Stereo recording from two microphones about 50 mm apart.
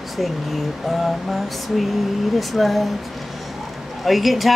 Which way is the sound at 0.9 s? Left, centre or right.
Centre.